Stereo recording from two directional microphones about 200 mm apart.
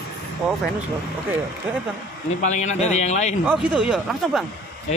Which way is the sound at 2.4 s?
35° left (ahead or behind).